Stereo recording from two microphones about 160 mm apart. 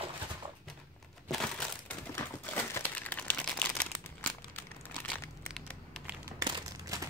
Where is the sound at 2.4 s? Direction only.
10° left (ahead or behind).